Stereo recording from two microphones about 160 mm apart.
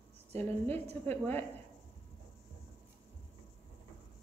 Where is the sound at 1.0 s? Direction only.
10° left (ahead or behind).